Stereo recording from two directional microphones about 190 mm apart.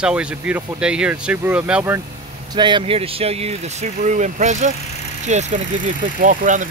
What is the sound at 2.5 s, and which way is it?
Speech, 25° right (ahead or behind).